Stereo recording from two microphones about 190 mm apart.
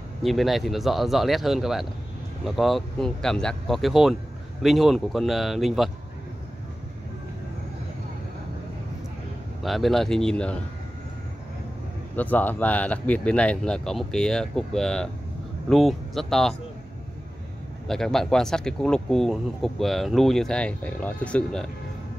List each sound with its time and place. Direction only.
0.2 s speech: centre (ahead or behind)
9.6 s speech: centre (ahead or behind)
12.2 s speech: 10° left (ahead or behind)
17.8 s speech: centre (ahead or behind)